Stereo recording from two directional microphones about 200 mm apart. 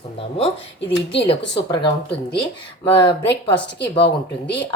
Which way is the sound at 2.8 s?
25° left (ahead or behind).